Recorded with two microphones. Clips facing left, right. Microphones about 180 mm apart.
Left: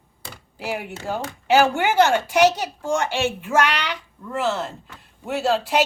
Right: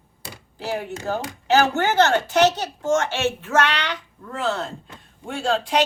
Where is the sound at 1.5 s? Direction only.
10° left (ahead or behind).